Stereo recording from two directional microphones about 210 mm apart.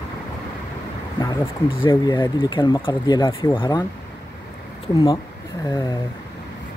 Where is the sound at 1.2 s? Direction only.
20° left (ahead or behind).